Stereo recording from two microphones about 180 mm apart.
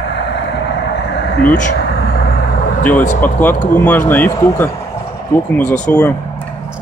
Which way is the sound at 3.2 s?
10° left (ahead or behind).